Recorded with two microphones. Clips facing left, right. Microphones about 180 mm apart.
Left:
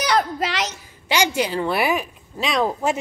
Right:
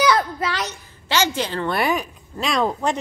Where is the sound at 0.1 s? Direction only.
85° left.